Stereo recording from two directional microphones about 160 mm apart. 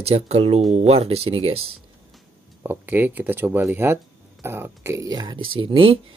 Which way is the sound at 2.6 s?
10° right (ahead or behind).